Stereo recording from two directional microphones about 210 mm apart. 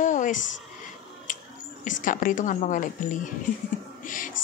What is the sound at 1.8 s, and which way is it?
Speech, 40° left (ahead or behind).